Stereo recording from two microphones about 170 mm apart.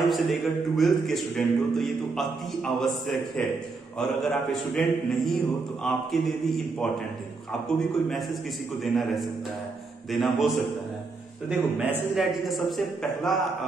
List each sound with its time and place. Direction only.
0.0 s a man's voice: centre (ahead or behind)
8.1 s a man's voice: centre (ahead or behind)